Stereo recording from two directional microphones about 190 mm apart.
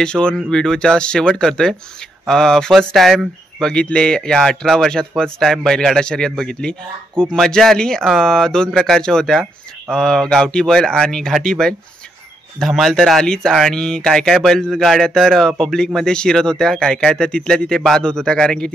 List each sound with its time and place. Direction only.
0.0 s speech: 5° left (ahead or behind)